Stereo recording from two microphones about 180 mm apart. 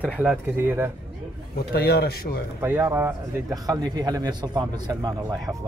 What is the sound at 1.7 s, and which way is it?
Speech, 60° left (ahead or behind).